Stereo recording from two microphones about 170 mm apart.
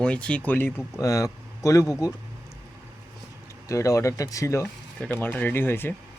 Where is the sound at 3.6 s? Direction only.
20° left (ahead or behind).